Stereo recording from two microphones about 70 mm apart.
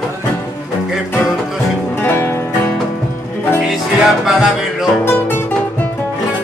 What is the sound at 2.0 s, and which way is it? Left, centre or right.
Music, left.